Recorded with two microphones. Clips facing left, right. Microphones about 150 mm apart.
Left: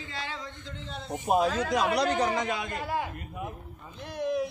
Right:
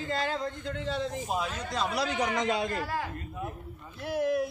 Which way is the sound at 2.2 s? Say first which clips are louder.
Even; 30° left (ahead or behind).